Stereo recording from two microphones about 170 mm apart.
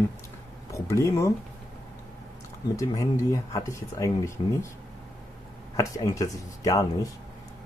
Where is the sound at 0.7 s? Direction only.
15° left (ahead or behind).